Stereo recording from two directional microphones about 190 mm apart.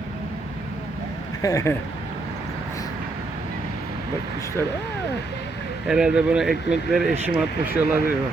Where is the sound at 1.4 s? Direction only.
20° left (ahead or behind).